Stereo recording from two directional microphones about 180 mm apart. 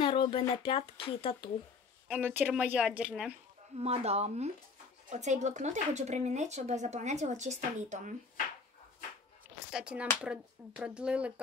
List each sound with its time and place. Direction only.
0.0 s speech: 30° left (ahead or behind)
2.0 s a woman's voice: 10° right (ahead or behind)
3.8 s speech: 35° right (ahead or behind)
9.7 s speech: 5° right (ahead or behind)